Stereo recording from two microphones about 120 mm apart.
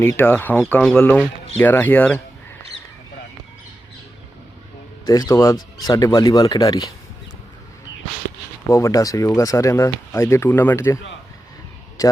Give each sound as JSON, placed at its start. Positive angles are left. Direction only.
{"t": 0.0, "sound": "speech", "side_deg": 15}
{"t": 0.8, "sound": "speech", "side_deg": 5}
{"t": 1.0, "sound": "speech", "side_deg": 15}
{"t": 5.0, "sound": "speech", "side_deg": 30}
{"t": 8.7, "sound": "speech", "side_deg": 30}